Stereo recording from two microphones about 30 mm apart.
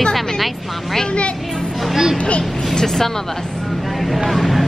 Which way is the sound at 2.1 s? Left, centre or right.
Left.